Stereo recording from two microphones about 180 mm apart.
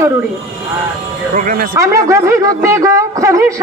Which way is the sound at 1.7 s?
15° right (ahead or behind).